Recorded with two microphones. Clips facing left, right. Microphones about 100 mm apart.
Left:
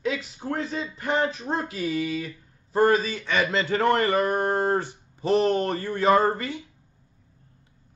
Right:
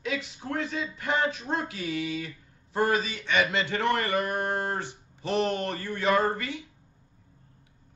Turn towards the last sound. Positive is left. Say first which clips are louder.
# left 4 dB
turn(degrees=35)  # may be behind; listen again after turning